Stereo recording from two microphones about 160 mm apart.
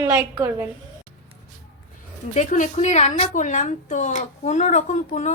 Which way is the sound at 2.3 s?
55° left (ahead or behind).